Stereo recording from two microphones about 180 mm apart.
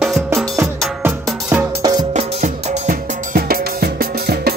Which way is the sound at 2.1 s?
35° right (ahead or behind).